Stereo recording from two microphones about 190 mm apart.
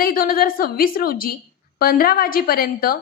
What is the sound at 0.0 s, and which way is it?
A woman's voice, 50° left (ahead or behind).